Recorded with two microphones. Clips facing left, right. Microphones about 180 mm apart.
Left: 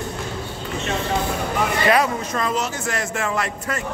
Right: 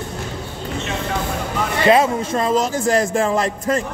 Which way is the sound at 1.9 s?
25° right (ahead or behind).